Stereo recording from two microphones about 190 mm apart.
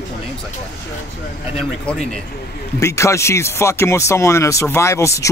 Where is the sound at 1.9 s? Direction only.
5° left (ahead or behind).